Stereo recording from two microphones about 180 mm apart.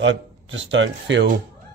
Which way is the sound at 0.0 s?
90° right.